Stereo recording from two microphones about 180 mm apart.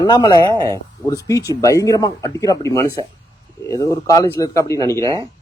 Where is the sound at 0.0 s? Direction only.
25° left (ahead or behind).